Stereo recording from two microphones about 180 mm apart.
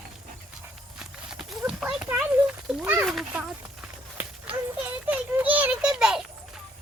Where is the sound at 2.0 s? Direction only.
10° right (ahead or behind).